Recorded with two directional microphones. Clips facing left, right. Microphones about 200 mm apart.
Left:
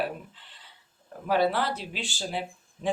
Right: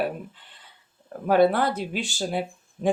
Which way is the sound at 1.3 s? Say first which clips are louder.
Right 6 dB; 50° right (ahead or behind).